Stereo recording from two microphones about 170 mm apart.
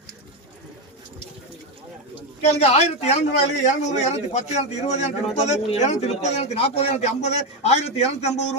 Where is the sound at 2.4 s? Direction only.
40° left (ahead or behind).